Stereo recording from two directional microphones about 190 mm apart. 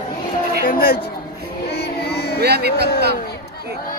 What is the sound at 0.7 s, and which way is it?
Speech, 50° left (ahead or behind).